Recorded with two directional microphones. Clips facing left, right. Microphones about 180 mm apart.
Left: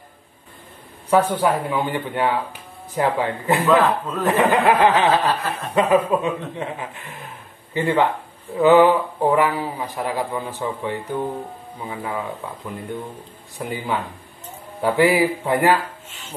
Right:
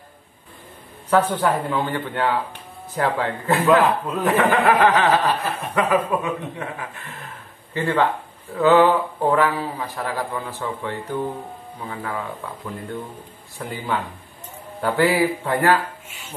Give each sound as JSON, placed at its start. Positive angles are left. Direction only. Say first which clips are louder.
{"t": 1.1, "sound": "speech", "louder": "left 1 dB", "side_deg": 10}
{"t": 3.8, "sound": "a man's voice", "louder": "even", "side_deg": -10}
{"t": 4.3, "sound": "speech", "louder": "left 1 dB", "side_deg": 15}
{"t": 5.2, "sound": "a man's voice", "louder": "even", "side_deg": -15}
{"t": 5.8, "sound": "speech", "louder": "left 3 dB", "side_deg": 25}
{"t": 13.6, "sound": "speech", "louder": "left 1 dB", "side_deg": 15}
{"t": 16.1, "sound": "a man's voice", "louder": "even", "side_deg": -10}